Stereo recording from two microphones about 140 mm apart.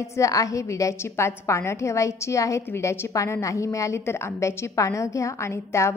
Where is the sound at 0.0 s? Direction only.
20° left (ahead or behind).